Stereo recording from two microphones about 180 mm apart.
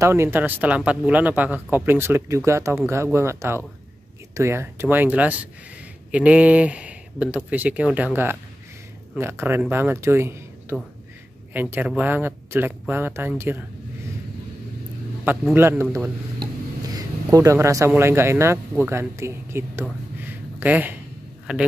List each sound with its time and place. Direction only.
0.0 s speech: 15° right (ahead or behind)
9.2 s speech: 15° right (ahead or behind)
15.5 s speech: 15° right (ahead or behind)
20.2 s a sound: 10° right (ahead or behind)